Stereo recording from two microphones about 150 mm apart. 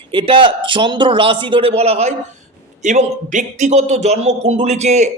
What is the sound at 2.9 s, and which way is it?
Speech, 55° right (ahead or behind).